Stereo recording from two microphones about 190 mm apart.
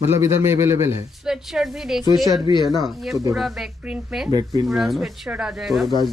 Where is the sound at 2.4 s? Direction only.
25° left (ahead or behind).